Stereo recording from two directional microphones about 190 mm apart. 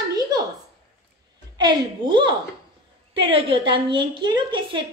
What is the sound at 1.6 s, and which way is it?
A woman's voice, 25° right (ahead or behind).